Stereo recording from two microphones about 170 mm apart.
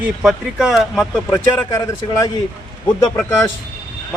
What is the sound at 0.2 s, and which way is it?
Speech, centre (ahead or behind).